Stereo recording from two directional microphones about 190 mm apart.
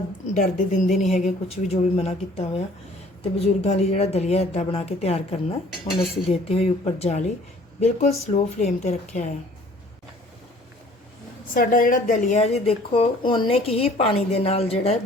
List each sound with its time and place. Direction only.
0.3 s speech: 40° left (ahead or behind)
11.5 s speech: 50° left (ahead or behind); by 14.9 s 30° left (ahead or behind)